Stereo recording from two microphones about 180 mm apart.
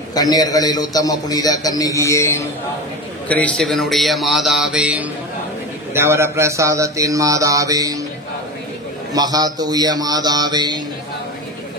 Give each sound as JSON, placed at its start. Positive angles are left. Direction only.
{"t": 0.1, "sound": "a man's voice", "side_deg": 20}
{"t": 9.1, "sound": "speech", "side_deg": -20}